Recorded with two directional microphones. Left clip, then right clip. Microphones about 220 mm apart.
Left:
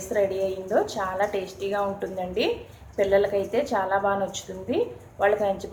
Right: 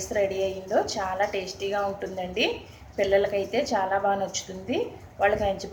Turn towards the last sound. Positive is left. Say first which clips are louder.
# left 1 dB
turn(degrees=5)  # may be behind; listen again after turning